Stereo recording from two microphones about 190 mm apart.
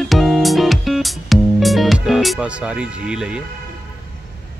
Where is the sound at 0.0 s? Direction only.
Centre (ahead or behind).